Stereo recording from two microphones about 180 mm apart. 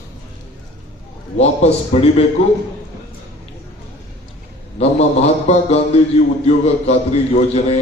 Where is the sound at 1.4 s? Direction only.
35° left (ahead or behind).